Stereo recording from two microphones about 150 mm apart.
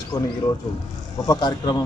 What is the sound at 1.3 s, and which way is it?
Speech, 30° left (ahead or behind).